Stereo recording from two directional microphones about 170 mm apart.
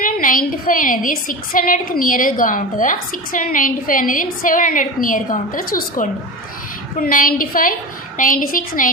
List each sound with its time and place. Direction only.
0.2 s a woman's voice: 55° left (ahead or behind)